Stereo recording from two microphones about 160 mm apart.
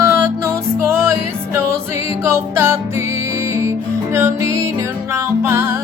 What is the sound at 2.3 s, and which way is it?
Music, 15° right (ahead or behind).